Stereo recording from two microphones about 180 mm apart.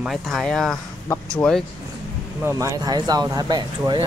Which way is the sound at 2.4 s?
15° right (ahead or behind).